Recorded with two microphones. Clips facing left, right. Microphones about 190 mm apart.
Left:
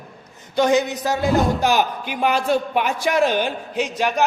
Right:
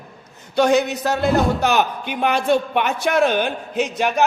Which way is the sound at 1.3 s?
Centre (ahead or behind).